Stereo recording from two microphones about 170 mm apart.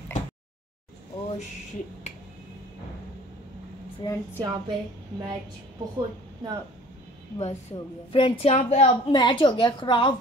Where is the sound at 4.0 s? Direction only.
15° left (ahead or behind).